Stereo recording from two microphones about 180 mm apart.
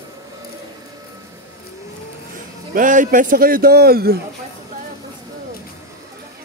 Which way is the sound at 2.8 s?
45° right (ahead or behind).